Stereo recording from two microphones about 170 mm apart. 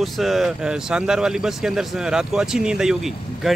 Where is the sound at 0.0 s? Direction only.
Centre (ahead or behind).